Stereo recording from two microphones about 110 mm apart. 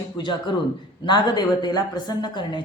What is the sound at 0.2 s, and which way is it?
A woman's voice, 45° left (ahead or behind).